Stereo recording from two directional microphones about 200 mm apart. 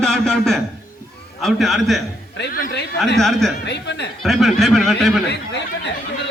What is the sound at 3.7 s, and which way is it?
Speech, 60° left (ahead or behind).